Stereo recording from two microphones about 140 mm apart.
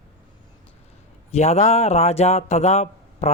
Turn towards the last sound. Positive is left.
turn(degrees=50)  # may be behind; listen again after turning